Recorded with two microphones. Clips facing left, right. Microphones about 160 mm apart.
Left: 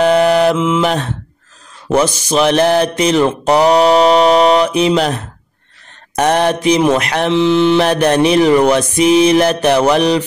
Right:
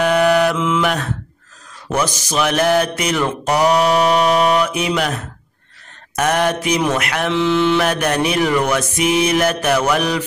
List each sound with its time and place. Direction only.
0.0 s mantra: 30° left (ahead or behind)
2.3 s mantra: 30° left (ahead or behind)